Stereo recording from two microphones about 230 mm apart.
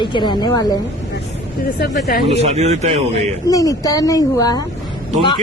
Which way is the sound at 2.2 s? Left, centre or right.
Right.